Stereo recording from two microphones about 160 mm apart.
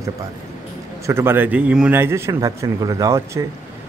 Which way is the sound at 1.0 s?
15° right (ahead or behind).